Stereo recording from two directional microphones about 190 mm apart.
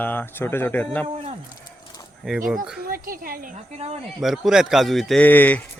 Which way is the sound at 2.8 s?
50° right (ahead or behind).